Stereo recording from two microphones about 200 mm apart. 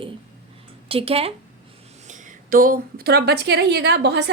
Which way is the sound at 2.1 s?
40° right (ahead or behind).